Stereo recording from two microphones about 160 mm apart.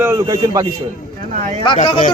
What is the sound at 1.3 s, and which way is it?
Speech, 50° right (ahead or behind).